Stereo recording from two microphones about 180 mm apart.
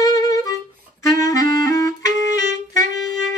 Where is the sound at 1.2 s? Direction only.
20° left (ahead or behind).